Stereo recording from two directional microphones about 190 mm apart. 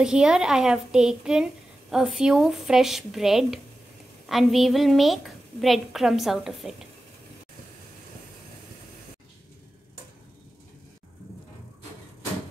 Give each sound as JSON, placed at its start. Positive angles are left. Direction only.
{"t": 0.0, "sound": "a woman's voice", "side_deg": -5}